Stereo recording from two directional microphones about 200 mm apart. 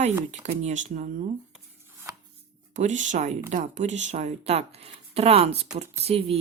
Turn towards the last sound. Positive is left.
turn(degrees=-30)  # may be behind; listen again after turning